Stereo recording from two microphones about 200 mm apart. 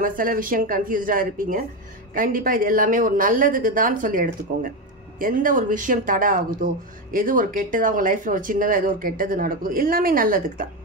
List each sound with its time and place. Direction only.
0.0 s speech: 45° right (ahead or behind)